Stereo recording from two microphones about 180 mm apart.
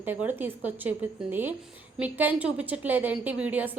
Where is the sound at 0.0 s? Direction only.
10° right (ahead or behind).